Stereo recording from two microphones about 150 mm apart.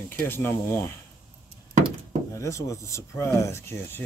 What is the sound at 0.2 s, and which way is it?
Speech, 15° left (ahead or behind).